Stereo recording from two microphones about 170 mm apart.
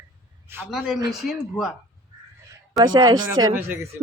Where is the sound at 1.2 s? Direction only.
Centre (ahead or behind).